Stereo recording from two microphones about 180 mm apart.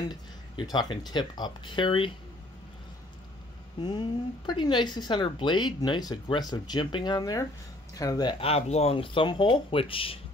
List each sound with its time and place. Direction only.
0.1 s speech: 25° left (ahead or behind)
3.8 s speech: 25° left (ahead or behind)